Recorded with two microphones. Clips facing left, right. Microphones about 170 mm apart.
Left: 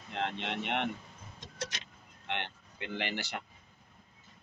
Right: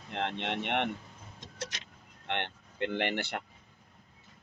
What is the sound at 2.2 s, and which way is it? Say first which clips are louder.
Speech: right 3 dB; 60° right (ahead or behind).